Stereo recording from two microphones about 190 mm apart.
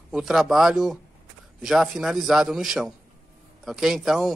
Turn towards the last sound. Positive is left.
turn(degrees=0)  # may be behind; listen again after turning